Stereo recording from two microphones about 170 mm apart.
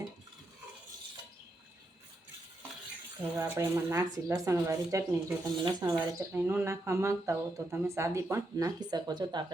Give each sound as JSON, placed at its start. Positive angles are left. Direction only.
{"t": 3.3, "sound": "speech", "side_deg": -10}
{"t": 6.3, "sound": "speech", "side_deg": -10}